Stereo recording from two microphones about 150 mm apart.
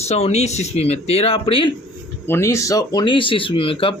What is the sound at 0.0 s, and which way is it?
Speech, 45° left (ahead or behind).